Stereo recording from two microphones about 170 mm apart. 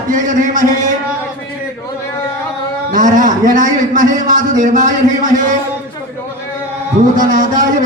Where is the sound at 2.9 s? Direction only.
50° right (ahead or behind).